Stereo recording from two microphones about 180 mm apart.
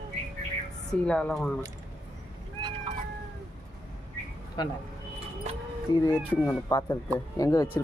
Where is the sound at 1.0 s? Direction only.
5° left (ahead or behind).